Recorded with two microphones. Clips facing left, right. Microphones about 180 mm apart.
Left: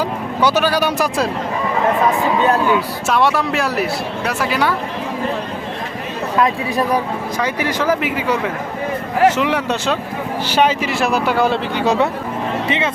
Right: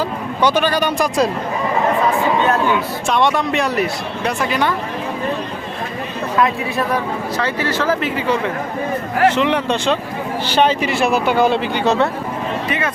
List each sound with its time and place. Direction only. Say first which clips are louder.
0.4 s speech: even; 10° left (ahead or behind)
3.1 s speech: even; 5° left (ahead or behind)
6.9 s speech: left 1 dB; 15° left (ahead or behind)
12.6 s speech: left 3 dB; 25° left (ahead or behind)